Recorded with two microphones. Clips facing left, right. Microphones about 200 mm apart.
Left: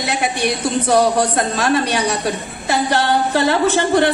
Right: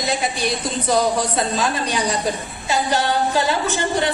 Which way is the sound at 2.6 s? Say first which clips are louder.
Left 3 dB; 65° left (ahead or behind).